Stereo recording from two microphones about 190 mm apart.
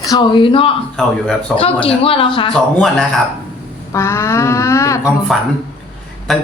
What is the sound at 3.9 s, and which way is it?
Speech, 15° left (ahead or behind).